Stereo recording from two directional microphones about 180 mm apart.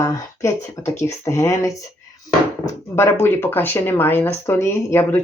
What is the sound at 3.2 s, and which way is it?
Speech, 10° left (ahead or behind).